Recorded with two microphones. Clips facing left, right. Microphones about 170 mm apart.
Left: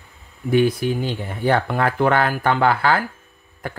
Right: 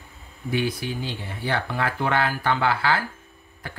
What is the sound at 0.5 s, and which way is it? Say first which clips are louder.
Speech: left 9 dB; 50° left (ahead or behind).